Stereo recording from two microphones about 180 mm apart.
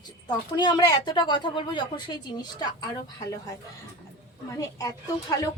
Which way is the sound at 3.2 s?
20° left (ahead or behind).